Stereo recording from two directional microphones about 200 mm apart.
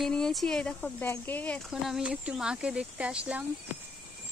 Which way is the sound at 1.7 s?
5° right (ahead or behind).